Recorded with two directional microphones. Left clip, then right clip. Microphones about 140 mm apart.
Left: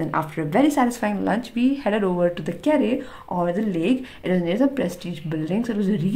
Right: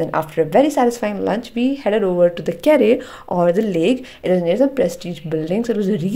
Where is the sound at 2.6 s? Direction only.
45° right (ahead or behind).